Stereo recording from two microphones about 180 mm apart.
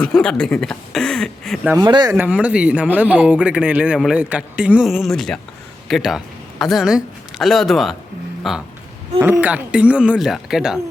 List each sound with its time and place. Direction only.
0.0 s speech: 5° left (ahead or behind)
1.8 s speech: 25° right (ahead or behind)
2.1 s speech: 5° right (ahead or behind)